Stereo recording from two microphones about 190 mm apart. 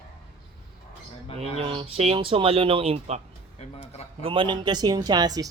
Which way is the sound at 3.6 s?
35° left (ahead or behind).